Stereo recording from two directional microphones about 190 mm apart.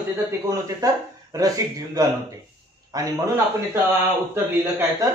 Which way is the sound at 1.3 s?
20° right (ahead or behind).